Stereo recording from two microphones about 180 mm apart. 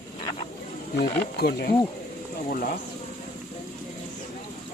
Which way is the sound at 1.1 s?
65° left (ahead or behind).